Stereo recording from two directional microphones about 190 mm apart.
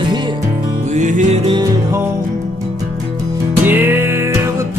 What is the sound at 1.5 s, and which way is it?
Music, 15° right (ahead or behind).